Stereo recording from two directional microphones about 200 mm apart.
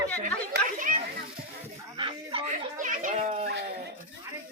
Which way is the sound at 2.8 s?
40° right (ahead or behind).